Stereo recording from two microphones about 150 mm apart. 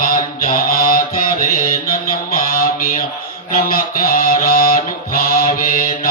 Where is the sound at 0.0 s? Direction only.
70° left (ahead or behind).